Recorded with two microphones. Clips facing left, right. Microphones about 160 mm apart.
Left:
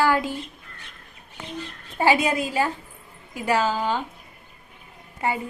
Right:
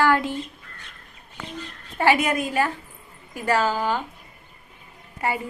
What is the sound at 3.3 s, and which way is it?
Speech, 15° left (ahead or behind).